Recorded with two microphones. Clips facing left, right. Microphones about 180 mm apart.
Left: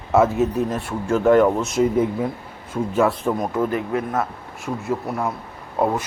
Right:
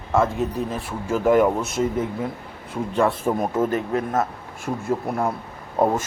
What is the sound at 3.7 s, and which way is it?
Speech, 40° right (ahead or behind).